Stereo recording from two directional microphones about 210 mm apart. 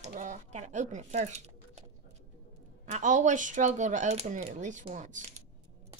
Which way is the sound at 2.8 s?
35° right (ahead or behind).